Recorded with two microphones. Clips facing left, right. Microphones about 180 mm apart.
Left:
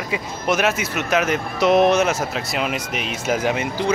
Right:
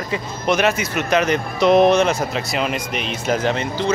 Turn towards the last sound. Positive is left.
turn(degrees=10)  # may be behind; listen again after turning